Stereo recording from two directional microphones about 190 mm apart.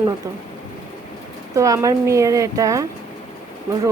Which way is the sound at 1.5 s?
15° right (ahead or behind).